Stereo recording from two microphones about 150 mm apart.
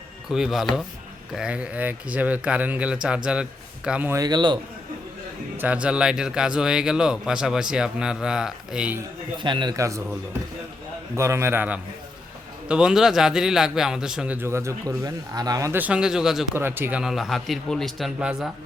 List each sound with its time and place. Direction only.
0.3 s a man's voice: 5° right (ahead or behind)
4.2 s a man's voice: 30° right (ahead or behind)
5.5 s a man's voice: 10° right (ahead or behind)
9.4 s a man's voice: 30° right (ahead or behind)
11.2 s a man's voice: 15° right (ahead or behind)
16.6 s speech: 15° right (ahead or behind)
17.0 s a man's voice: centre (ahead or behind)